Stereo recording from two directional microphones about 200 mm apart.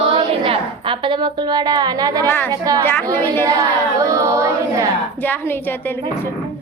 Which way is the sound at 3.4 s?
15° right (ahead or behind).